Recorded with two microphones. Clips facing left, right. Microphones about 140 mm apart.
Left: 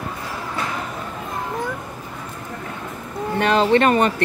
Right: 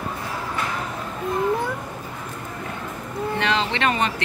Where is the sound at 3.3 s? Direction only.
50° left (ahead or behind).